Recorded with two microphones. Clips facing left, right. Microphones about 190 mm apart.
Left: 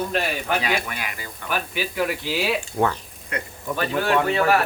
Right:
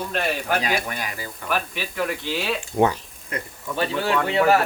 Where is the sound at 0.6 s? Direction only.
40° right (ahead or behind).